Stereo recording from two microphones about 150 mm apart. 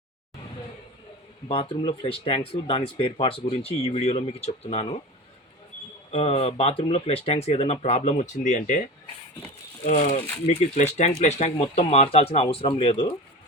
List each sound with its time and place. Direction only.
1.5 s speech: 40° left (ahead or behind)
1.7 s speech: 30° left (ahead or behind)
6.1 s speech: 40° left (ahead or behind)
9.8 s speech: 50° left (ahead or behind); by 13.1 s 35° left (ahead or behind)